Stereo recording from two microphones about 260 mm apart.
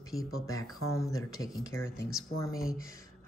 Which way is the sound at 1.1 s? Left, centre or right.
Centre.